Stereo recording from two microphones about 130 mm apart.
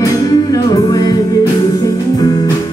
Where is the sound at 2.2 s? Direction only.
30° left (ahead or behind).